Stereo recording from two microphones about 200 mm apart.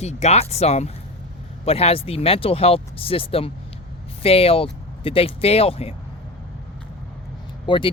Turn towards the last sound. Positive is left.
turn(degrees=25)  # may be behind; listen again after turning